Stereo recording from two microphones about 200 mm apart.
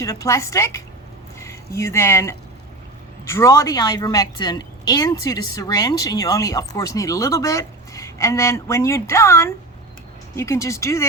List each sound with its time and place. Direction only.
0.0 s a woman's voice: 15° left (ahead or behind)